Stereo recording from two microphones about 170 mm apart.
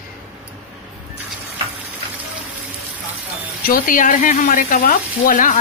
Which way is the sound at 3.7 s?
55° left (ahead or behind).